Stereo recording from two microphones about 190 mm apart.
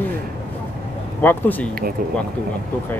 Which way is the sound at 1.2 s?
10° left (ahead or behind).